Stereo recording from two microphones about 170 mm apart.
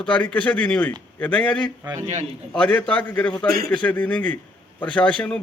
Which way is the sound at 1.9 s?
45° right (ahead or behind).